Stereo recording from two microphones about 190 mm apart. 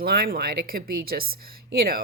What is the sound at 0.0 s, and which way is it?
A woman's voice, 55° right (ahead or behind).